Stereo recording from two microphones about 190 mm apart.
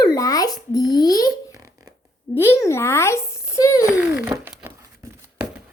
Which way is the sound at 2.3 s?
15° left (ahead or behind).